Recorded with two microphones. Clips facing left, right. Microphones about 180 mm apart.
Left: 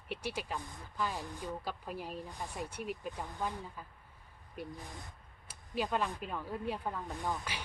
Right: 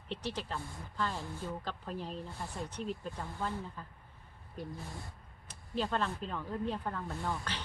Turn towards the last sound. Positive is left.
turn(degrees=15)  # may be behind; listen again after turning